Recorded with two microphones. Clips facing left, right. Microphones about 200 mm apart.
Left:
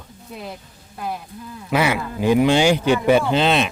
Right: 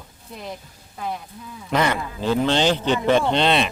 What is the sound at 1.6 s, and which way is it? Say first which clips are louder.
Speech: left 2 dB; 10° left (ahead or behind).